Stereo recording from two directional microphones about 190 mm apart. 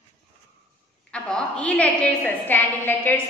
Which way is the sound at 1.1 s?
5° left (ahead or behind).